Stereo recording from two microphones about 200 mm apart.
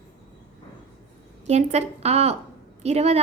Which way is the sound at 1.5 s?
35° right (ahead or behind).